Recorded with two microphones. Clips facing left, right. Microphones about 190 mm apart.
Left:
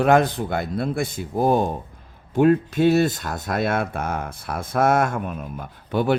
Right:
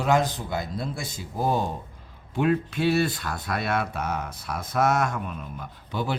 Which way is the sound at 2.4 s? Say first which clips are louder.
Left 7 dB; 45° left (ahead or behind).